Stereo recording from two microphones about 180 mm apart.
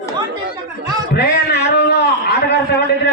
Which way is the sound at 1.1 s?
65° left (ahead or behind).